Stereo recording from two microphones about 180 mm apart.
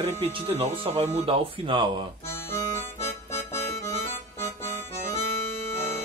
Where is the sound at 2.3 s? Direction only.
15° left (ahead or behind).